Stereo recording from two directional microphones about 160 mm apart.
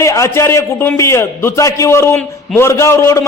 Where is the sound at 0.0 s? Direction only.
20° left (ahead or behind).